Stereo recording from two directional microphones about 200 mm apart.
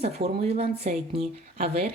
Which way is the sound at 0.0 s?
30° right (ahead or behind).